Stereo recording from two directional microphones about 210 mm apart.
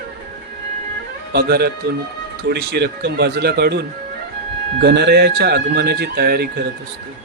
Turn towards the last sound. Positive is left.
turn(degrees=-50)  # may be behind; listen again after turning